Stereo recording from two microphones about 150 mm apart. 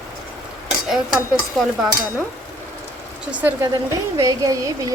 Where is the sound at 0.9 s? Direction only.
Centre (ahead or behind).